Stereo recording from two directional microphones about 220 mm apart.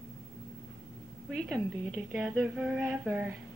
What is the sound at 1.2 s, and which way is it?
A woman's voice, centre (ahead or behind).